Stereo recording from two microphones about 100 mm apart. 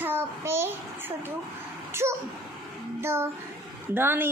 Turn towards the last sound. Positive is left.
turn(degrees=-20)  # may be behind; listen again after turning